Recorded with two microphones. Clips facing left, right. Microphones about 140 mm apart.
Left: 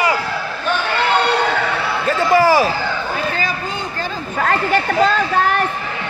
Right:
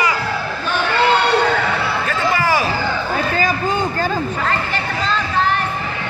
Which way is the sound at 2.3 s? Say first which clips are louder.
Left 7 dB; 35° left (ahead or behind).